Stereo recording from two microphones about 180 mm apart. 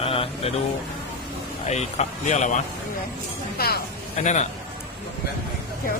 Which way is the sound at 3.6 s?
60° left (ahead or behind).